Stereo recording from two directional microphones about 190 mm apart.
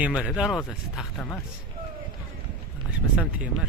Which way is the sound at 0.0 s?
5° right (ahead or behind).